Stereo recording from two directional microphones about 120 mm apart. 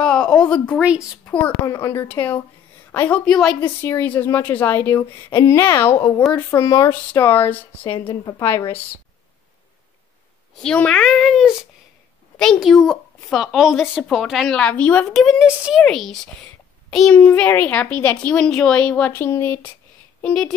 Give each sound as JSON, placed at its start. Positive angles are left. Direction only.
{"t": 0.0, "sound": "a sound", "side_deg": 5}
{"t": 0.7, "sound": "a woman's voice", "side_deg": -5}
{"t": 1.7, "sound": "a woman's voice", "side_deg": 25}
{"t": 3.6, "sound": "a woman's voice", "side_deg": 15}
{"t": 6.9, "sound": "a woman's voice", "side_deg": 15}
{"t": 8.1, "sound": "a woman's voice", "side_deg": 25}
{"t": 10.6, "sound": "a woman's voice", "side_deg": 5}
{"t": 15.0, "sound": "a woman's voice", "side_deg": 0}
{"t": 17.2, "sound": "a woman's voice", "side_deg": 15}